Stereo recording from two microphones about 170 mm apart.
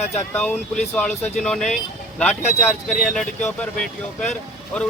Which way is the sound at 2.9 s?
Centre (ahead or behind).